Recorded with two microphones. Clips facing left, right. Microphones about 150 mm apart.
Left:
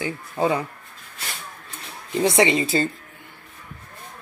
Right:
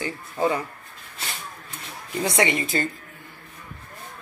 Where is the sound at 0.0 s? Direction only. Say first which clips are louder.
Left 1 dB; 15° left (ahead or behind).